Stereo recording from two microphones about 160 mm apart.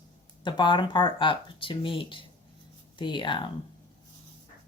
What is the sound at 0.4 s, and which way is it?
Speech, 30° left (ahead or behind).